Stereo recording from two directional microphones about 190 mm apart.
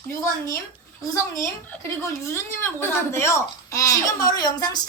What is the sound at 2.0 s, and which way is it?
A woman's voice, 15° left (ahead or behind).